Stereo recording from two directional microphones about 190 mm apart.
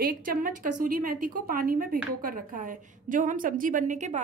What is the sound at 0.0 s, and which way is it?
A woman's voice, 50° right (ahead or behind).